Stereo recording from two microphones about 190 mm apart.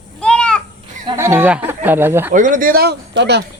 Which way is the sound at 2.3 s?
45° right (ahead or behind).